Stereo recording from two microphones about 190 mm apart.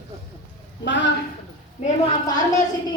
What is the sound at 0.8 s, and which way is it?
Speech, 70° left (ahead or behind).